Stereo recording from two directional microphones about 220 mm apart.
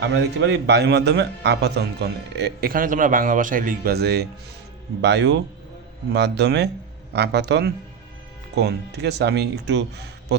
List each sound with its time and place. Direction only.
0.0 s a man's voice: 55° right (ahead or behind)